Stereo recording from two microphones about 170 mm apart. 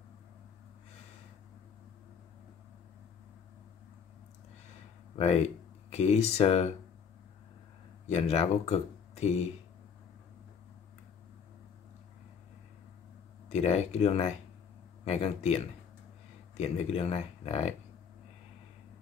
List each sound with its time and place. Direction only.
5.1 s speech: 40° left (ahead or behind)
8.1 s speech: 40° left (ahead or behind)
13.5 s speech: 40° left (ahead or behind)